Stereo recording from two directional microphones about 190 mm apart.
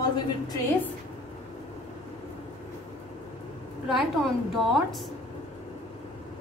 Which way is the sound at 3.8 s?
Centre (ahead or behind).